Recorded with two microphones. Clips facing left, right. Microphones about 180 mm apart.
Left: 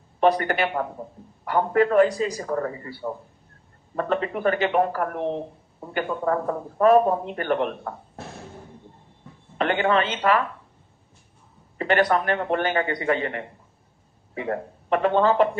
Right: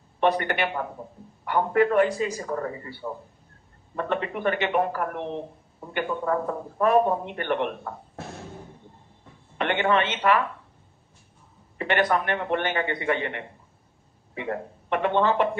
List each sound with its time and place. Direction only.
0.2 s a man's voice: 40° left (ahead or behind)
3.9 s a man's voice: 40° left (ahead or behind)
9.6 s a man's voice: 35° left (ahead or behind)
11.8 s a man's voice: 40° left (ahead or behind)